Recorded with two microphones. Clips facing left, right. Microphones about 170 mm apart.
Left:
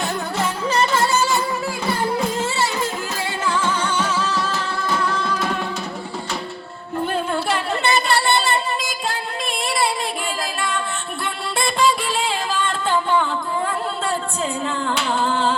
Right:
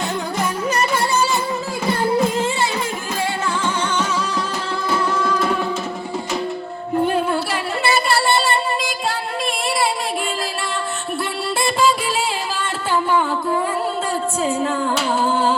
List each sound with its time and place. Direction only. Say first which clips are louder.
2.3 s music: right 2 dB; 15° right (ahead or behind)
7.1 s music: right 2 dB; 5° right (ahead or behind)
12.5 s music: even; 10° right (ahead or behind)
14.8 s humming: right 2 dB; 10° right (ahead or behind)